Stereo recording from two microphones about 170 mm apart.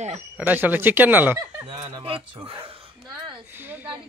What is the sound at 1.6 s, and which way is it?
Speech, 25° right (ahead or behind).